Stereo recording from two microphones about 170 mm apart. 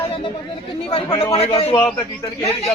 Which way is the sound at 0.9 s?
35° left (ahead or behind).